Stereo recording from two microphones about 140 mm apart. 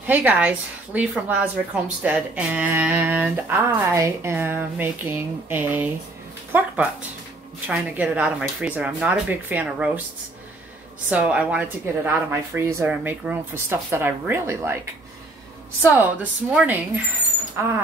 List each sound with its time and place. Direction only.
0.0 s speech: 10° right (ahead or behind)
11.1 s speech: 10° right (ahead or behind)
15.9 s speech: 10° right (ahead or behind)